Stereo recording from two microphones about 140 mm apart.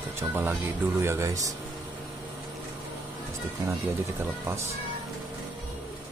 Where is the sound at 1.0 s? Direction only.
20° right (ahead or behind).